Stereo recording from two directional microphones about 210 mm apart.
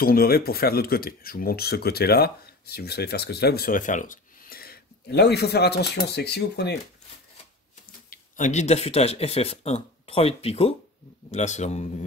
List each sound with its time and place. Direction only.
0.0 s speech: 45° left (ahead or behind)
8.1 s a man's voice: 35° left (ahead or behind)